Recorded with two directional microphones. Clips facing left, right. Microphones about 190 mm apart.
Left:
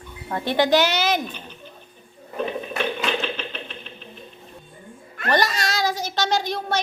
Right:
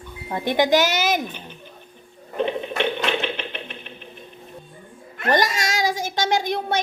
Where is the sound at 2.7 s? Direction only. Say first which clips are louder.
Right 1 dB; 15° right (ahead or behind).